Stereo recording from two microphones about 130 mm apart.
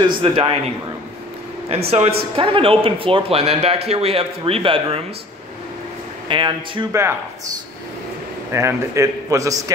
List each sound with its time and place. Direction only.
0.2 s a man's voice: 45° right (ahead or behind)
1.7 s a man's voice: 50° right (ahead or behind)
6.2 s speech: 40° right (ahead or behind)
6.9 s a man's voice: 20° right (ahead or behind)
8.5 s a man's voice: 20° right (ahead or behind)